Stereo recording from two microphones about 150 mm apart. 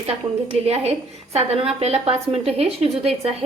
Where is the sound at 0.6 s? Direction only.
45° right (ahead or behind).